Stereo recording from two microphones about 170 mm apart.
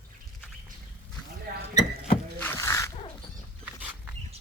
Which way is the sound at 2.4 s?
15° left (ahead or behind).